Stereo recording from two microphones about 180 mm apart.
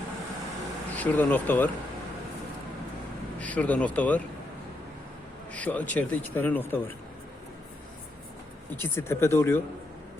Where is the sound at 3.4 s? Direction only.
10° left (ahead or behind).